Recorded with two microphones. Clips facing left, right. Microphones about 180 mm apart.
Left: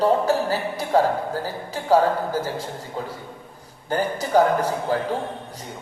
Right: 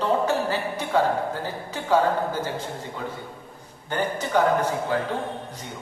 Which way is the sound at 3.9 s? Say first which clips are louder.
Left 4 dB; 35° left (ahead or behind).